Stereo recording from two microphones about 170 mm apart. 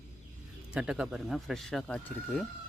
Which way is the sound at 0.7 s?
5° right (ahead or behind).